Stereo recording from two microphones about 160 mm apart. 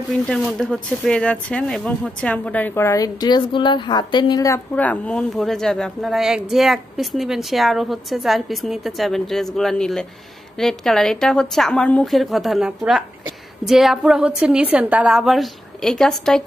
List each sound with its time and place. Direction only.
0.3 s speech: 5° left (ahead or behind); by 4.6 s 25° left (ahead or behind)
4.7 s a woman's voice: 10° left (ahead or behind)